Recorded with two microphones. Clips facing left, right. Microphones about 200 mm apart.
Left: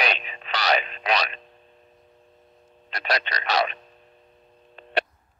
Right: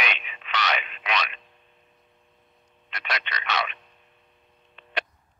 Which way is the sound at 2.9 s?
35° left (ahead or behind).